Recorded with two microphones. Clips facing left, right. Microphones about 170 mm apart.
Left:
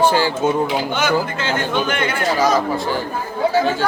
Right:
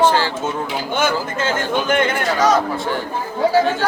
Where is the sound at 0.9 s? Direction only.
50° right (ahead or behind).